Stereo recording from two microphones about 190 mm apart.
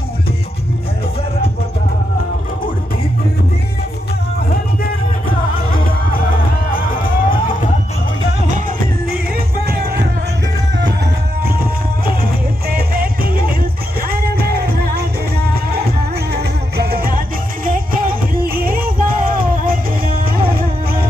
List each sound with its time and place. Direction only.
7.0 s music: 25° left (ahead or behind)
9.7 s music: 55° right (ahead or behind)
12.2 s music: 50° right (ahead or behind)